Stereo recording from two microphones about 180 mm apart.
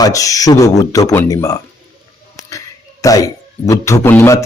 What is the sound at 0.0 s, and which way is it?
A man's voice, 20° left (ahead or behind).